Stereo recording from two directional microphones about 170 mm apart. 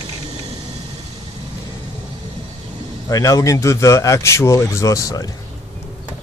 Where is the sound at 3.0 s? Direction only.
20° left (ahead or behind).